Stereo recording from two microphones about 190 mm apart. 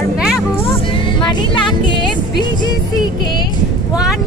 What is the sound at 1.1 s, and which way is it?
Music, 25° left (ahead or behind).